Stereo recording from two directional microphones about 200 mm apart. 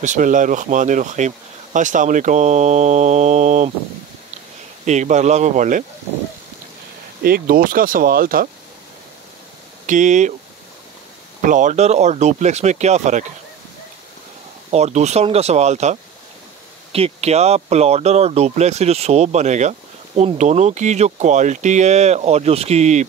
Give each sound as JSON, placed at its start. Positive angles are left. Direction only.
{"t": 0.0, "sound": "speech", "side_deg": -40}
{"t": 4.8, "sound": "speech", "side_deg": -35}
{"t": 7.2, "sound": "speech", "side_deg": -45}
{"t": 9.8, "sound": "speech", "side_deg": -40}
{"t": 11.4, "sound": "speech", "side_deg": -40}
{"t": 14.7, "sound": "speech", "side_deg": -35}